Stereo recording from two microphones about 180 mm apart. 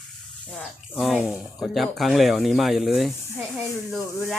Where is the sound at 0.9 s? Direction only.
Centre (ahead or behind).